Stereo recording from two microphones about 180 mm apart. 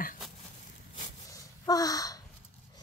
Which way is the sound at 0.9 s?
20° left (ahead or behind).